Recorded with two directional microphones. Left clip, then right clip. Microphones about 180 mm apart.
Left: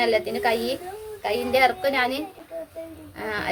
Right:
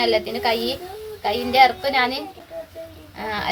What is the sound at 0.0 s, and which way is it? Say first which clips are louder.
A woman's voice: right 2 dB; 15° left (ahead or behind).